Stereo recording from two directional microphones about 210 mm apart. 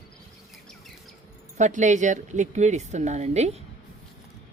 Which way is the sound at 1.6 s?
35° right (ahead or behind).